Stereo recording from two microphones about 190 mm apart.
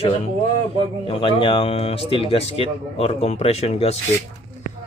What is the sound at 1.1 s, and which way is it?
Speech, 25° left (ahead or behind).